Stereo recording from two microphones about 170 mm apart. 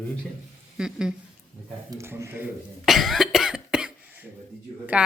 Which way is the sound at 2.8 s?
Centre (ahead or behind).